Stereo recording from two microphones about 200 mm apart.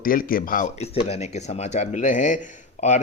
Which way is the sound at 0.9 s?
30° left (ahead or behind).